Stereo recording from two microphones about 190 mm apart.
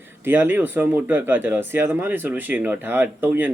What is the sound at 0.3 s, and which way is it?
Speech, 10° right (ahead or behind).